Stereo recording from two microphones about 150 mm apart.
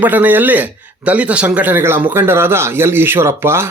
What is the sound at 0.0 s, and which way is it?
Speech, 10° right (ahead or behind).